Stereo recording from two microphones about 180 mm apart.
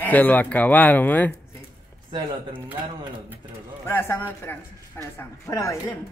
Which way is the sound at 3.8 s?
15° left (ahead or behind).